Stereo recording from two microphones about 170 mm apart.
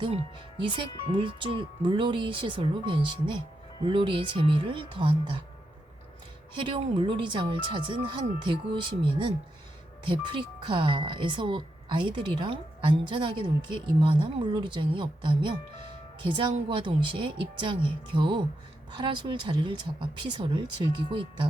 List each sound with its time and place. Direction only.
0.6 s speech: 30° right (ahead or behind)
6.6 s speech: 30° right (ahead or behind)